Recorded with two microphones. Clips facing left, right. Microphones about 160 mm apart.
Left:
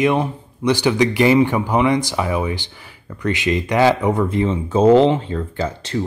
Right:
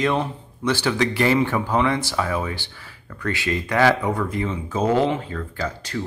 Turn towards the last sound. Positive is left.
turn(degrees=25)  # may be behind; listen again after turning